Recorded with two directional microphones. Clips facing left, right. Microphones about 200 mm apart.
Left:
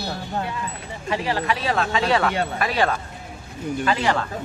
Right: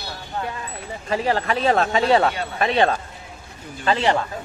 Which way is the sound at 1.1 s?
45° right (ahead or behind).